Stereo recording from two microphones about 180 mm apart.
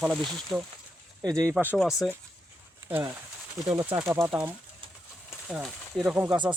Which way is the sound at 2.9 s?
10° right (ahead or behind).